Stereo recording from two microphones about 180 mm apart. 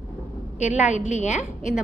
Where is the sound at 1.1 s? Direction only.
40° left (ahead or behind).